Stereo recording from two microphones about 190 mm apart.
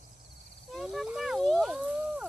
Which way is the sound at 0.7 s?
Centre (ahead or behind).